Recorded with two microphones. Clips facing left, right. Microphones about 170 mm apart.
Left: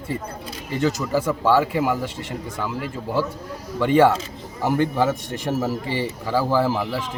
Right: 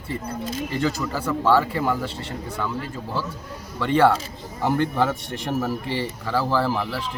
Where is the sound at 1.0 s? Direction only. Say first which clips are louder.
Left 2 dB; 15° left (ahead or behind).